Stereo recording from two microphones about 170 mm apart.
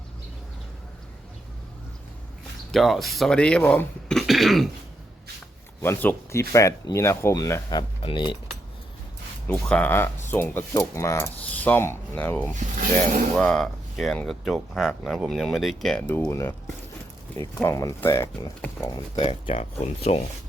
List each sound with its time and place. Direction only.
2.7 s speech: centre (ahead or behind)
5.8 s speech: 10° left (ahead or behind); by 8.4 s 30° left (ahead or behind)
9.5 s speech: 5° left (ahead or behind); by 20.2 s 40° left (ahead or behind)